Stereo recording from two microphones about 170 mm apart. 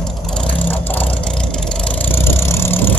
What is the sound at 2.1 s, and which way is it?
Vehicle, 15° left (ahead or behind).